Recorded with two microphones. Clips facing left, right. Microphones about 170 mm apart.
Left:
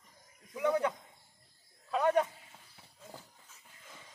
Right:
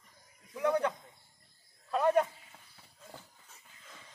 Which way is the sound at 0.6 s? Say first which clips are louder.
Even; 5° left (ahead or behind).